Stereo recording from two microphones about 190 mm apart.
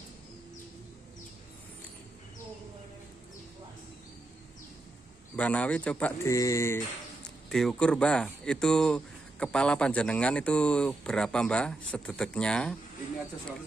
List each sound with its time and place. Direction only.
5.3 s speech: 5° left (ahead or behind)
7.4 s speech: centre (ahead or behind)